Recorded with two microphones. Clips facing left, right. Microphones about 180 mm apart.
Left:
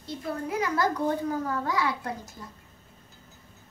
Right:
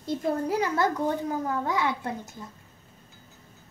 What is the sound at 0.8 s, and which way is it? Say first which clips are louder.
A child's voice: right 1 dB; 20° right (ahead or behind).